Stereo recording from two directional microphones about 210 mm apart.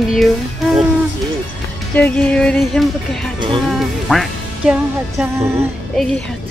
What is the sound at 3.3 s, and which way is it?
Speech, 25° right (ahead or behind).